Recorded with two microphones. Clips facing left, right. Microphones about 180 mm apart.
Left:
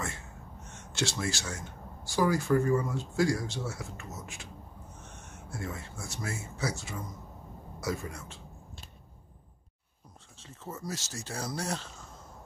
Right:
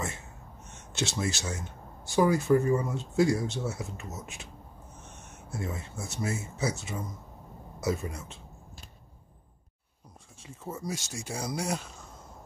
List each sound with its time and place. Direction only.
0.7 s speech: 20° right (ahead or behind)
10.4 s speech: 10° right (ahead or behind)